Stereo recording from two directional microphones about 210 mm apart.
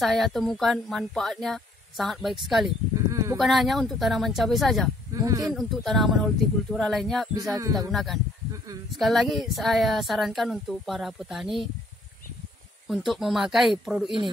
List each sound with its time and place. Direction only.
0.0 s speech: centre (ahead or behind)
3.1 s a sound: 15° right (ahead or behind)
3.3 s speech: centre (ahead or behind)
5.1 s speech: 15° right (ahead or behind)
5.5 s speech: centre (ahead or behind)
7.5 s music: 15° right (ahead or behind)
7.9 s speech: centre (ahead or behind)
12.8 s speech: centre (ahead or behind)